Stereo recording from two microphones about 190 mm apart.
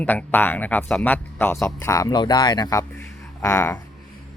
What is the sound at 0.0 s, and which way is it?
Speech, 10° left (ahead or behind).